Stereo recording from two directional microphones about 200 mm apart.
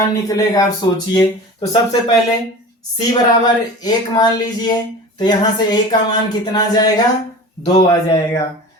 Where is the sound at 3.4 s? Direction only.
20° left (ahead or behind).